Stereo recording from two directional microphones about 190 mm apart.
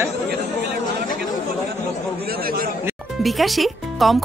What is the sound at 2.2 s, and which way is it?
Speech, 50° right (ahead or behind).